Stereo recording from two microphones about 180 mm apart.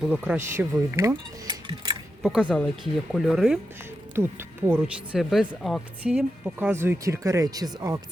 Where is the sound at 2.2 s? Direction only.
5° right (ahead or behind).